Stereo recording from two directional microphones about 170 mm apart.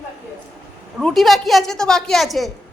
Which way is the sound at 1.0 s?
Centre (ahead or behind).